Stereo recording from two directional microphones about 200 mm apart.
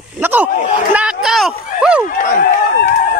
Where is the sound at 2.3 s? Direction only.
45° left (ahead or behind).